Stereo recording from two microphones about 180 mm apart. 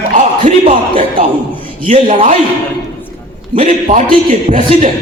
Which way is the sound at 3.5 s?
35° right (ahead or behind).